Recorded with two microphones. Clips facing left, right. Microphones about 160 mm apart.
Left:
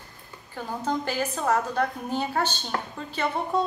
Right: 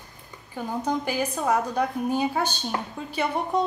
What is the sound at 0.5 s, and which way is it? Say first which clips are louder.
A woman's voice: right 2 dB; 15° right (ahead or behind).